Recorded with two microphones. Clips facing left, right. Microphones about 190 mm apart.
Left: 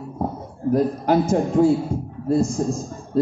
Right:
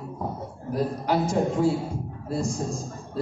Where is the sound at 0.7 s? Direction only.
45° left (ahead or behind).